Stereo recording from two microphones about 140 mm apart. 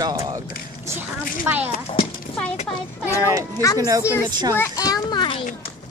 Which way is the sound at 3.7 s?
25° right (ahead or behind).